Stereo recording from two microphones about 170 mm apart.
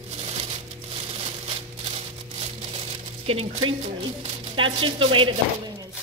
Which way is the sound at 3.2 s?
35° right (ahead or behind).